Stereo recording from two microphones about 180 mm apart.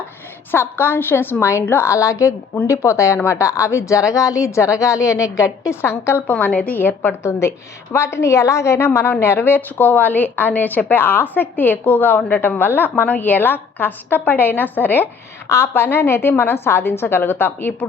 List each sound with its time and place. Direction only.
0.5 s a woman's voice: 15° left (ahead or behind)